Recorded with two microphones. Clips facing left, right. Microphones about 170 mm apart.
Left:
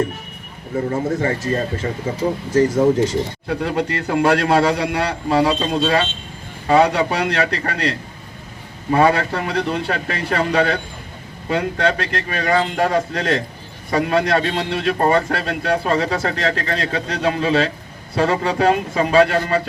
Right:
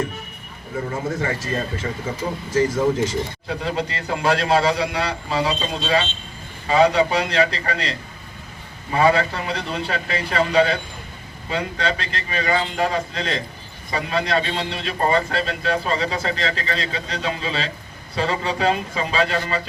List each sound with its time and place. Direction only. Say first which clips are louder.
1.0 s speech: left 5 dB; 35° left (ahead or behind)
3.5 s a man's voice: left 5 dB; 55° left (ahead or behind)